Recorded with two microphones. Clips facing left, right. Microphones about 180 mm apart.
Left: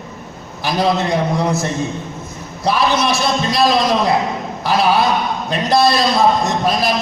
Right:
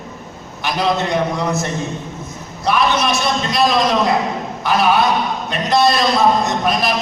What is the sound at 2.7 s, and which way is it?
Speech, 35° left (ahead or behind).